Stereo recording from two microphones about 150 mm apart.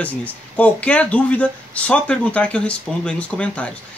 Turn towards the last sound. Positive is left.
turn(degrees=10)  # may be behind; listen again after turning